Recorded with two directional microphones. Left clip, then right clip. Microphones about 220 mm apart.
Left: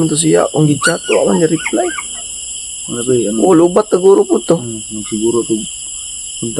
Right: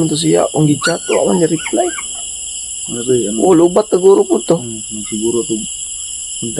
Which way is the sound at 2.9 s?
20° left (ahead or behind).